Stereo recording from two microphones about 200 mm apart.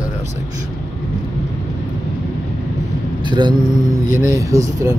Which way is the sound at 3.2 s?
20° right (ahead or behind).